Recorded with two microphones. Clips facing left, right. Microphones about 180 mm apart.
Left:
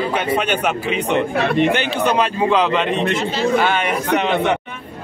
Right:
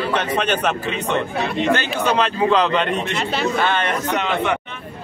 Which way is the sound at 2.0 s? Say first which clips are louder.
Left 1 dB; 10° left (ahead or behind).